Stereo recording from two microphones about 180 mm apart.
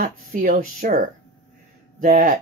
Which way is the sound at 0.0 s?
45° right (ahead or behind).